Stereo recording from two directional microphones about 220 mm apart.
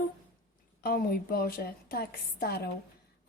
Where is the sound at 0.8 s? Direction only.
40° left (ahead or behind).